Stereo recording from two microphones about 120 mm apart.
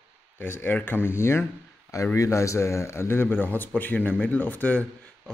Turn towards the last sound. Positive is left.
turn(degrees=15)  # may be behind; listen again after turning